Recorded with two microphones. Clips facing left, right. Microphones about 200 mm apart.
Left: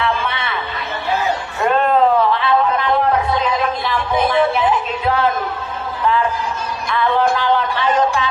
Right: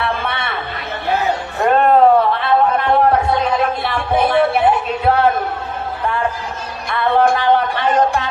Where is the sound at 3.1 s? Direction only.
55° right (ahead or behind).